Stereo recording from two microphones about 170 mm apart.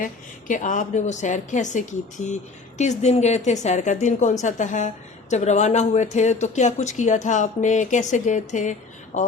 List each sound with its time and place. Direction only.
0.0 s speech: 50° left (ahead or behind)